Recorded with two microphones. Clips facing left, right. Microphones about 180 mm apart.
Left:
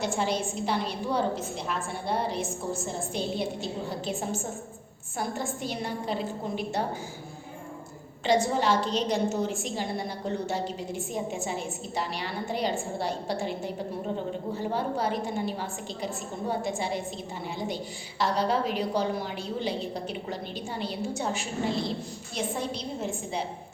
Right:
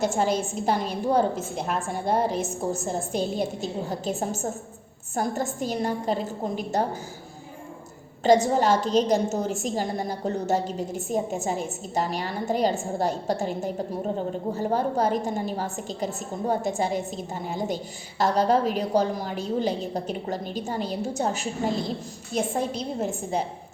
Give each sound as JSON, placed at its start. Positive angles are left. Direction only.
{"t": 0.0, "sound": "a woman's voice", "side_deg": -45}
{"t": 8.5, "sound": "a woman's voice", "side_deg": -45}